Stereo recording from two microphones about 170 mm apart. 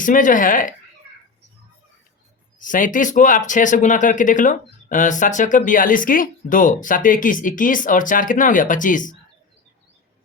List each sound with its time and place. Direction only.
0.0 s speech: 50° left (ahead or behind)
2.6 s speech: 50° left (ahead or behind)